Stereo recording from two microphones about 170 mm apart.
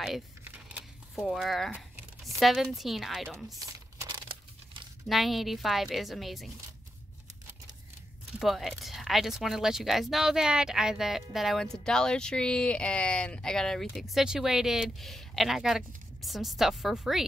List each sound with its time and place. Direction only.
0.4 s a sound: 10° right (ahead or behind)
2.3 s speech: centre (ahead or behind)
3.5 s crumpling: 20° right (ahead or behind)
5.0 s speech: centre (ahead or behind)
8.4 s speech: centre (ahead or behind)